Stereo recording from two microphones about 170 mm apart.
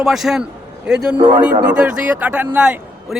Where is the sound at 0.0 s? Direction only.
Centre (ahead or behind).